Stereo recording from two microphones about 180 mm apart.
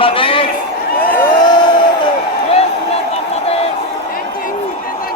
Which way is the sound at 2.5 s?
35° left (ahead or behind).